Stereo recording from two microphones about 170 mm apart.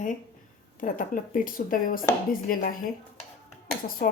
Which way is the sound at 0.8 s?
50° left (ahead or behind).